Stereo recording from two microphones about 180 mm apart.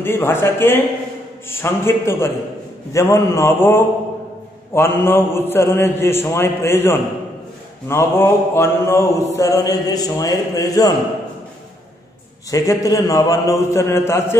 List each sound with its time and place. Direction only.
0.0 s a man's voice: 15° left (ahead or behind)
7.9 s mantra: 15° left (ahead or behind)
12.4 s mantra: 20° left (ahead or behind)